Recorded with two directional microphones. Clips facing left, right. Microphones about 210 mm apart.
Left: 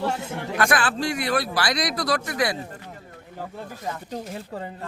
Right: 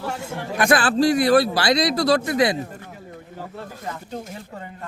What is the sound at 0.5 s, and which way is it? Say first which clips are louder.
Speech: right 4 dB; 20° right (ahead or behind).